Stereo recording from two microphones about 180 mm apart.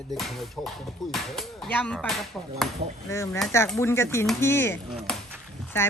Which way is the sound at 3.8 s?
15° left (ahead or behind).